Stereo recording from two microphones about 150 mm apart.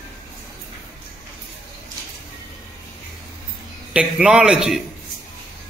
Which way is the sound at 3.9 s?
5° right (ahead or behind).